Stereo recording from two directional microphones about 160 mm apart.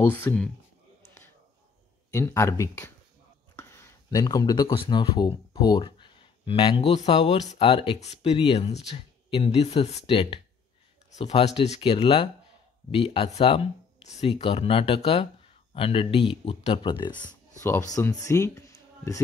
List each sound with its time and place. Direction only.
0.0 s speech: 10° left (ahead or behind)
2.1 s speech: 15° left (ahead or behind)
3.5 s a sound: 15° left (ahead or behind)
4.7 s speech: 30° left (ahead or behind)
7.0 s speech: 40° left (ahead or behind); by 19.2 s 20° left (ahead or behind)